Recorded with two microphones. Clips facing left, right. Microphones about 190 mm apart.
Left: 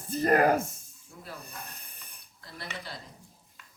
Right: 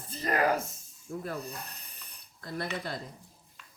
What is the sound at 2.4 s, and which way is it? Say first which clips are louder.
Speech: right 7 dB; 50° right (ahead or behind).